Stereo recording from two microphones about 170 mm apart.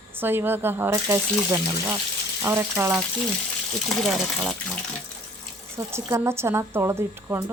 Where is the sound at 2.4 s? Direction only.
15° right (ahead or behind).